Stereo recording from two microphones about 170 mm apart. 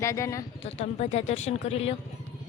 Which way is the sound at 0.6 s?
40° left (ahead or behind).